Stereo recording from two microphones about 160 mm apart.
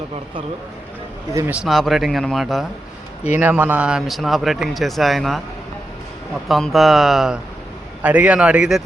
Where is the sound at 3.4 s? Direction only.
10° right (ahead or behind).